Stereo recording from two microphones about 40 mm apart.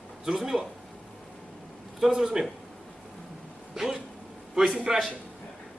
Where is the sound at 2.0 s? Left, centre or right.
Centre.